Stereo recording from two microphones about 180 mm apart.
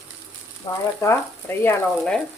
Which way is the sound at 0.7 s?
25° left (ahead or behind).